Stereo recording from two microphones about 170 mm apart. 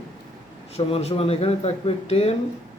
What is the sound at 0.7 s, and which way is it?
A man's voice, 35° left (ahead or behind).